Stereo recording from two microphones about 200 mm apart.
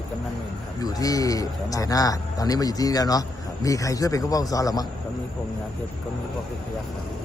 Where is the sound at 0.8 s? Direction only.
15° left (ahead or behind).